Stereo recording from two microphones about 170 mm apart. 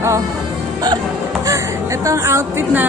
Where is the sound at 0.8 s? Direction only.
20° right (ahead or behind).